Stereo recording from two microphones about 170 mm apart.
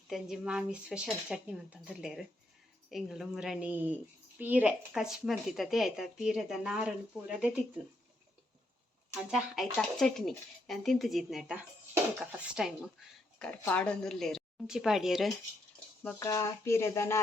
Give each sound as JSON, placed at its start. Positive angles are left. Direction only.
{"t": 0.1, "sound": "a woman's voice", "side_deg": -5}
{"t": 9.3, "sound": "a woman's voice", "side_deg": 0}
{"t": 13.5, "sound": "a woman's voice", "side_deg": 10}
{"t": 16.0, "sound": "speech", "side_deg": 15}